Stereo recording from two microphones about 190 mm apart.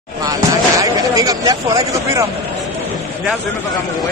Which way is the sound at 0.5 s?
20° right (ahead or behind).